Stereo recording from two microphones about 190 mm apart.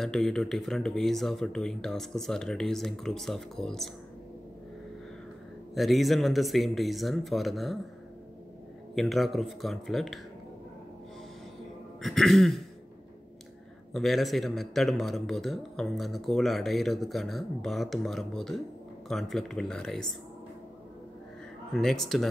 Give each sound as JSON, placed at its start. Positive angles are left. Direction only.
{"t": 0.0, "sound": "a man's voice", "side_deg": 0}
{"t": 5.8, "sound": "a man's voice", "side_deg": 0}
{"t": 8.9, "sound": "a man's voice", "side_deg": 0}
{"t": 12.0, "sound": "a man's voice", "side_deg": 0}
{"t": 13.9, "sound": "a man's voice", "side_deg": 0}
{"t": 21.7, "sound": "a man's voice", "side_deg": 0}